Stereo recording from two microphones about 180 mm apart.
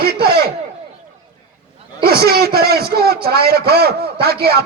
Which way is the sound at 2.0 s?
60° right (ahead or behind).